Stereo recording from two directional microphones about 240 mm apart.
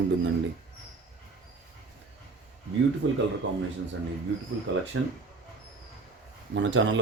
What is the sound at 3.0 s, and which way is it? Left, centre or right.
Speech, right.